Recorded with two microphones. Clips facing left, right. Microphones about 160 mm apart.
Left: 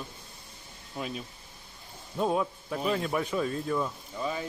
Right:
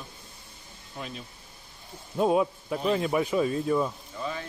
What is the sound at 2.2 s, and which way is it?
Speech, 10° right (ahead or behind).